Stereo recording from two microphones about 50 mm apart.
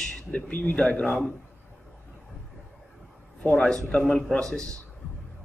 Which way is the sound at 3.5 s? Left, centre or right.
Centre.